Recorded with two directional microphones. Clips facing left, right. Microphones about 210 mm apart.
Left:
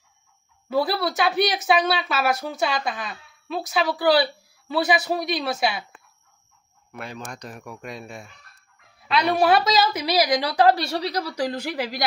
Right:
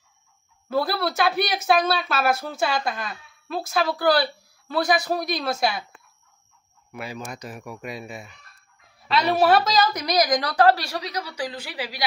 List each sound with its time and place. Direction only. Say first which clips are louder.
0.7 s a woman's voice: left 1 dB; centre (ahead or behind)
6.9 s a woman's voice: right 1 dB; 5° right (ahead or behind); by 10.8 s 10° left (ahead or behind)
10.8 s a woman's voice: left 5 dB; 30° left (ahead or behind); by 12.0 s 45° left (ahead or behind)